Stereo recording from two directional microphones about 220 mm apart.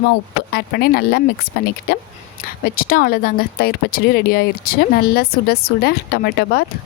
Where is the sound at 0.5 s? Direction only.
45° left (ahead or behind).